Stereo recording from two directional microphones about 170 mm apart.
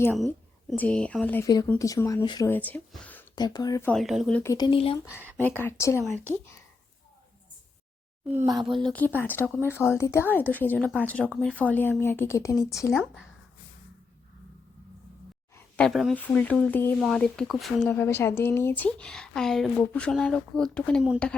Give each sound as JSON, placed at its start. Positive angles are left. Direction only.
{"t": 0.8, "sound": "speech", "side_deg": 5}
{"t": 1.5, "sound": "speech", "side_deg": 20}
{"t": 2.5, "sound": "speech", "side_deg": 10}
{"t": 3.3, "sound": "speech", "side_deg": 25}
{"t": 3.8, "sound": "speech", "side_deg": 0}
{"t": 4.4, "sound": "speech", "side_deg": 25}
{"t": 5.1, "sound": "speech", "side_deg": -10}
{"t": 5.6, "sound": "speech", "side_deg": 15}
{"t": 8.3, "sound": "speech", "side_deg": -15}
{"t": 8.7, "sound": "speech", "side_deg": 5}
{"t": 12.9, "sound": "speech", "side_deg": 0}
{"t": 15.5, "sound": "a sound", "side_deg": 5}
{"t": 16.1, "sound": "speech", "side_deg": 10}